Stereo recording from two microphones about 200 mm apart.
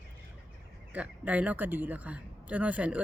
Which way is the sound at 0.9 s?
5° right (ahead or behind).